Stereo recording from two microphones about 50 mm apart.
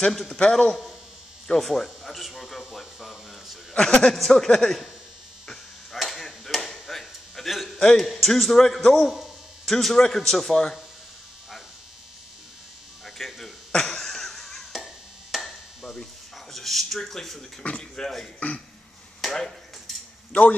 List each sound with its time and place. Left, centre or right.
0.0 s a man's voice: centre
2.7 s a sound: centre
3.7 s a man's voice: centre
4.1 s a man's voice: centre
5.9 s chop: centre
7.8 s a man's voice: centre
13.0 s a sound: centre
16.5 s a man's voice: centre